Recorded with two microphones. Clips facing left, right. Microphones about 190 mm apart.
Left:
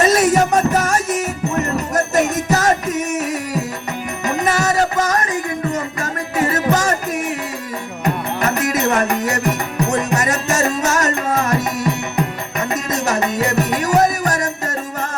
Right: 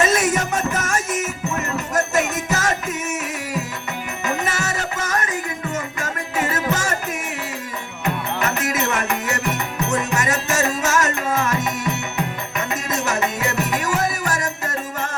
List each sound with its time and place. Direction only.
0.0 s music: 35° left (ahead or behind)
8.0 s music: 35° left (ahead or behind)